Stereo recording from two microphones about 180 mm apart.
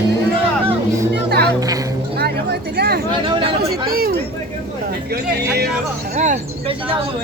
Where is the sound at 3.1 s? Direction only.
30° right (ahead or behind).